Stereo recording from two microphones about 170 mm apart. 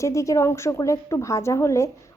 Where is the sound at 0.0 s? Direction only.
20° left (ahead or behind).